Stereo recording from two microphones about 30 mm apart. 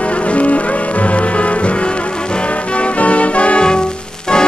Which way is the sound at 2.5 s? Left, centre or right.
Left.